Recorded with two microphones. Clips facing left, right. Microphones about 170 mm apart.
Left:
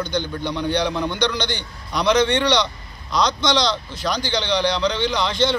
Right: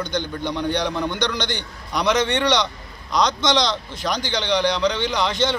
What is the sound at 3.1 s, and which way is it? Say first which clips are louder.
A man's voice: even; 15° right (ahead or behind).